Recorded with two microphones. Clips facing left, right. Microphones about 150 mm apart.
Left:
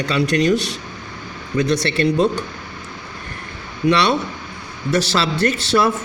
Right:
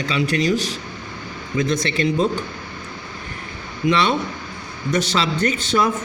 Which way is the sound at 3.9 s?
75° left (ahead or behind).